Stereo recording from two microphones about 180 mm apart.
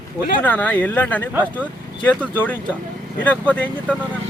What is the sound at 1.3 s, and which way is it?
Speech, 10° right (ahead or behind).